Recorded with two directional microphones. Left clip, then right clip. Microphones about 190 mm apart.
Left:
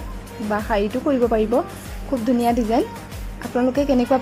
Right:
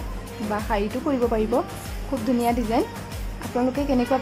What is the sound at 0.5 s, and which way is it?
A woman's voice, 15° left (ahead or behind).